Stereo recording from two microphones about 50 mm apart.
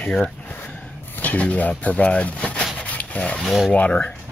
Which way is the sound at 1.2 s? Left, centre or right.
Left.